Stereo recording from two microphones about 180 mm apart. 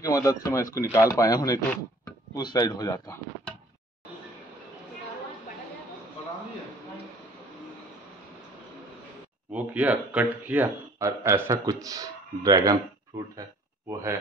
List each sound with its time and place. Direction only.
0.0 s speech: 20° left (ahead or behind)
9.5 s speech: 10° right (ahead or behind)